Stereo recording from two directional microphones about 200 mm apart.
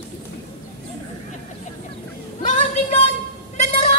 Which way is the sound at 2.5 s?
35° left (ahead or behind).